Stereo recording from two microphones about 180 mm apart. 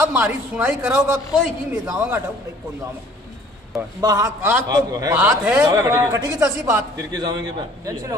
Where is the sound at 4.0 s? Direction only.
20° right (ahead or behind).